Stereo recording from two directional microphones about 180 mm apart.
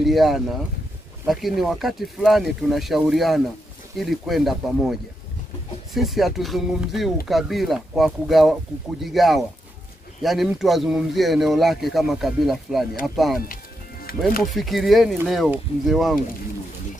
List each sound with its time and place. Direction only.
0.0 s speech: centre (ahead or behind)
5.9 s speech: centre (ahead or behind)
14.1 s speech: 55° left (ahead or behind)
14.4 s speech: centre (ahead or behind)